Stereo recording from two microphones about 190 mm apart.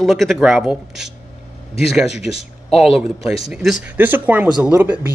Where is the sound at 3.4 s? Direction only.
Centre (ahead or behind).